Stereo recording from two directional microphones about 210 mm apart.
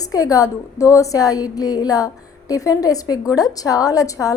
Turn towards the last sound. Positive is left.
turn(degrees=15)  # may be behind; listen again after turning